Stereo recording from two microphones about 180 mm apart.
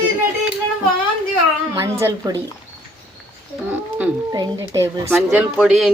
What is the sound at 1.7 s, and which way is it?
Speech, 20° right (ahead or behind).